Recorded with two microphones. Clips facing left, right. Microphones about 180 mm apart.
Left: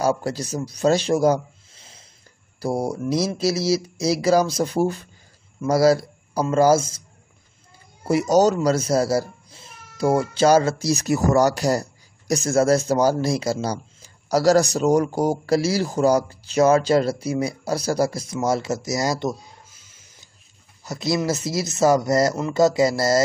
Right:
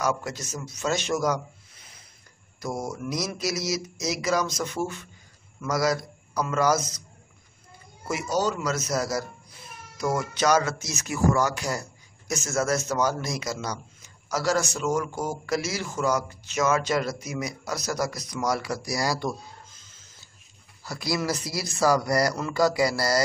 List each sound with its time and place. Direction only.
0.0 s a man's voice: 30° left (ahead or behind)
8.0 s speech: 35° left (ahead or behind)
19.7 s a sound: 10° left (ahead or behind)
20.8 s speech: 20° left (ahead or behind)